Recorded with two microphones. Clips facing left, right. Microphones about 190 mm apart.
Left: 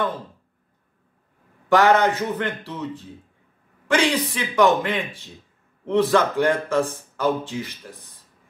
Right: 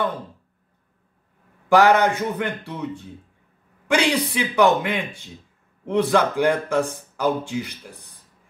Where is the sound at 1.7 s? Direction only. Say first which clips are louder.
Right 1 dB; 10° right (ahead or behind).